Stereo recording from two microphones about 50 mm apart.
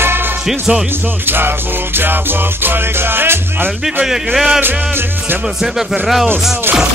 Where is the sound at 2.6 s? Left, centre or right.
Right.